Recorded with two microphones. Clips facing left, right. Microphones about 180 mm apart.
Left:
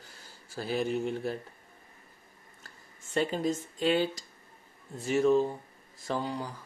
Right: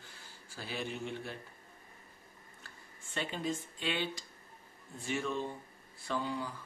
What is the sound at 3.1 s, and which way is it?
Speech, 40° left (ahead or behind).